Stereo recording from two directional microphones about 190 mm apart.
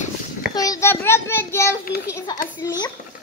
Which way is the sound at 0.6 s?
15° left (ahead or behind).